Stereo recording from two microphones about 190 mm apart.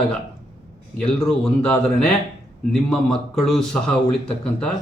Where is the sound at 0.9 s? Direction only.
5° left (ahead or behind).